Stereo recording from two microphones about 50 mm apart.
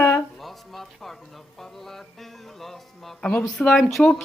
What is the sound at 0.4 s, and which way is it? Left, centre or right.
Speech, centre.